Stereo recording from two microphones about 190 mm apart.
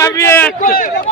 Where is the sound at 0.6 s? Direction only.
50° left (ahead or behind).